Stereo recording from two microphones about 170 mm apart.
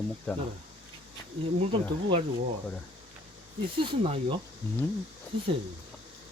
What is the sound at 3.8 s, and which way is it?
Speech, 35° right (ahead or behind).